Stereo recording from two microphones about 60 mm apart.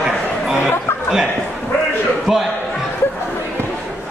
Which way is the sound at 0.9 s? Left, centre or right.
Left.